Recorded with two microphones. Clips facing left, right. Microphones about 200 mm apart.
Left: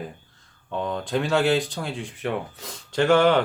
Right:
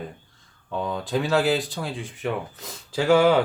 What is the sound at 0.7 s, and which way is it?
Speech, centre (ahead or behind).